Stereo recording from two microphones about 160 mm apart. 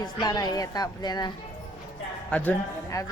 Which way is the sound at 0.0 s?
25° left (ahead or behind).